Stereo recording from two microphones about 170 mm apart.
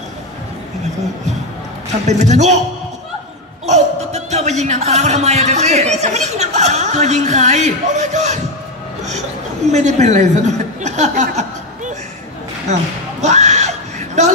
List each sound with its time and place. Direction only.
2.0 s speech: 45° right (ahead or behind)
3.6 s speech: 40° right (ahead or behind)
9.7 s speech: 40° right (ahead or behind)
13.2 s a sound: 45° right (ahead or behind)